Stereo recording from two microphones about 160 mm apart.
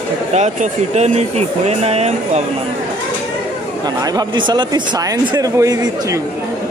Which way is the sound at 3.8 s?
25° right (ahead or behind).